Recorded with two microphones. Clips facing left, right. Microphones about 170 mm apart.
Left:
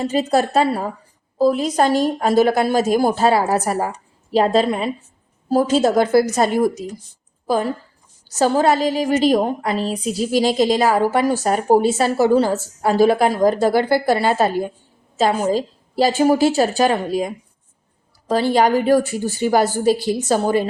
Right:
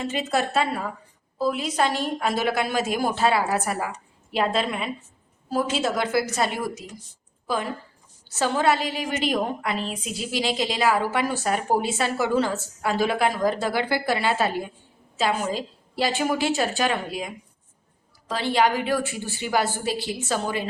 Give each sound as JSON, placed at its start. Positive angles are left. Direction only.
{"t": 0.0, "sound": "a woman's voice", "side_deg": 40}